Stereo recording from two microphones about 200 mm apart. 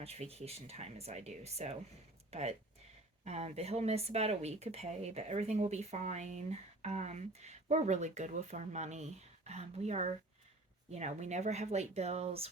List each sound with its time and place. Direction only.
0.0 s speech: 30° right (ahead or behind)